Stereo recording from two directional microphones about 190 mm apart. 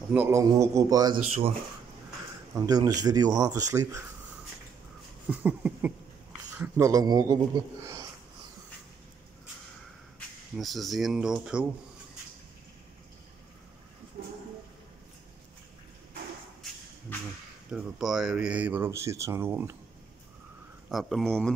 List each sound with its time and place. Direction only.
0.1 s speech: 10° right (ahead or behind); by 1.5 s 30° right (ahead or behind)
2.5 s speech: 20° right (ahead or behind)
5.3 s speech: 10° right (ahead or behind)
10.5 s speech: centre (ahead or behind)
17.6 s speech: 5° right (ahead or behind)
20.9 s speech: centre (ahead or behind)